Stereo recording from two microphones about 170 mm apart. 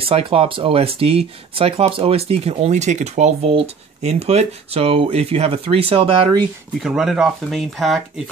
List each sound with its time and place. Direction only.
0.0 s speech: 35° right (ahead or behind)
6.8 s speech: 5° right (ahead or behind)